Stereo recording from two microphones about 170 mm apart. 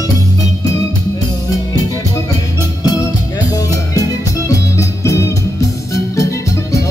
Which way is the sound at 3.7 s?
20° left (ahead or behind).